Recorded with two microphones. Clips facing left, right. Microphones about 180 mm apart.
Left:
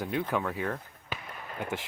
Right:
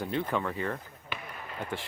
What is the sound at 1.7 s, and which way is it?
Speech, 15° left (ahead or behind).